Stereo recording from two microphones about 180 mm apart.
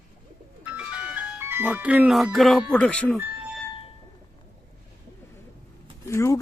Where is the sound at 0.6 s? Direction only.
5° right (ahead or behind).